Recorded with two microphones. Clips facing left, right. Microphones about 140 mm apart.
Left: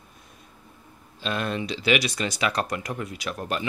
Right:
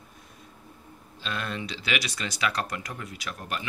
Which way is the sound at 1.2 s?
20° left (ahead or behind).